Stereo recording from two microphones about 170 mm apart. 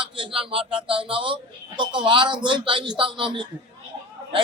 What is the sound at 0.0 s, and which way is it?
A man's voice, 30° right (ahead or behind).